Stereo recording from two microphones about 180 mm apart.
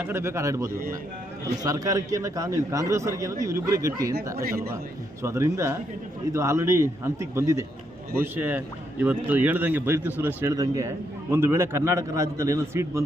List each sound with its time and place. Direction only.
0.0 s a man's voice: 15° right (ahead or behind)
5.2 s a man's voice: 15° right (ahead or behind)